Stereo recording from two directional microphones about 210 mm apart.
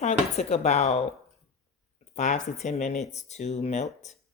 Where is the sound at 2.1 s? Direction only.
35° left (ahead or behind).